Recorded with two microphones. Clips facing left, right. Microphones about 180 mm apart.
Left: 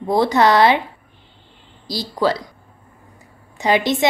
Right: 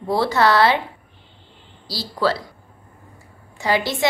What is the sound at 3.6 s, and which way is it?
Speech, 20° left (ahead or behind).